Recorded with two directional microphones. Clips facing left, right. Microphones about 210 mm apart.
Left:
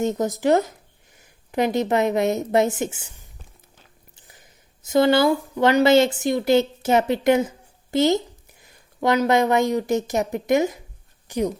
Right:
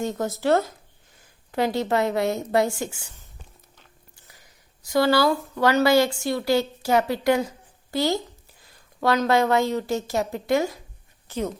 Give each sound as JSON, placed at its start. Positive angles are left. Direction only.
{"t": 0.0, "sound": "a woman's voice", "side_deg": 20}
{"t": 4.3, "sound": "a sound", "side_deg": 20}
{"t": 5.3, "sound": "a woman's voice", "side_deg": 15}